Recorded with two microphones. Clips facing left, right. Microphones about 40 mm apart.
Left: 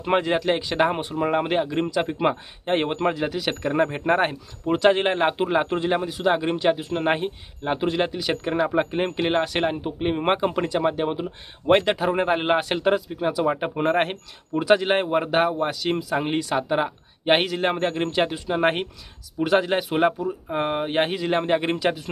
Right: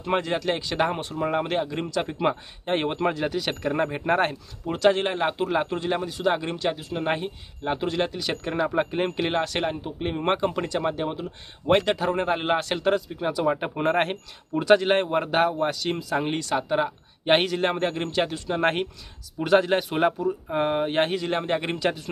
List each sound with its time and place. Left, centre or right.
0.0 s speech: left
4.7 s speech: left
7.6 s speech: centre